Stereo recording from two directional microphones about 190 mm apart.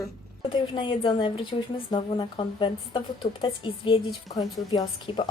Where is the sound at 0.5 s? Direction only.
25° left (ahead or behind).